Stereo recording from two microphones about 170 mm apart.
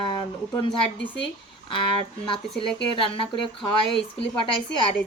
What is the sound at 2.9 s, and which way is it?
Speech, 30° left (ahead or behind).